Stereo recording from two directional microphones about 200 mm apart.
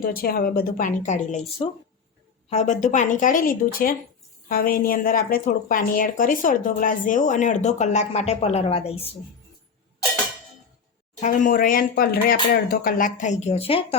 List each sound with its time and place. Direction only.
0.0 s a woman's voice: 50° left (ahead or behind); by 9.1 s 30° left (ahead or behind)
11.2 s a woman's voice: 40° left (ahead or behind)